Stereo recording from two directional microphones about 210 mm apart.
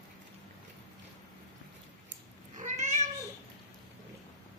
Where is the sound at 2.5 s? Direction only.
35° right (ahead or behind).